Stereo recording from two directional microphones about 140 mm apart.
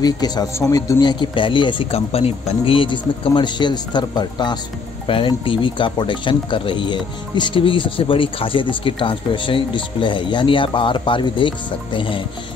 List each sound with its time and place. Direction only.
0.0 s speech: 25° left (ahead or behind)